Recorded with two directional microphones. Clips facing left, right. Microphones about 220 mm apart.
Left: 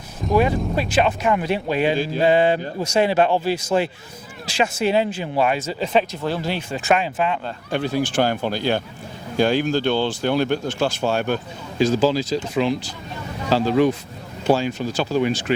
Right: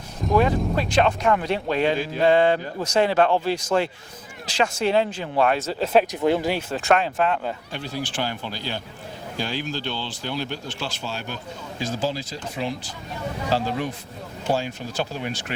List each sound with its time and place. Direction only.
0.8 s speech: 5° left (ahead or behind)
6.1 s speech: 15° right (ahead or behind); by 7.3 s 5° left (ahead or behind)
7.7 s speech: 55° left (ahead or behind)
11.8 s speech: 85° left
14.4 s speech: 80° left